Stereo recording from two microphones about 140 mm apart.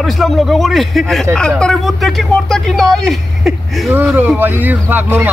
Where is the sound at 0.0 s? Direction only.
Centre (ahead or behind).